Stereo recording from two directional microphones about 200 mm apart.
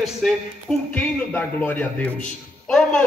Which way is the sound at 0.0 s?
Centre (ahead or behind).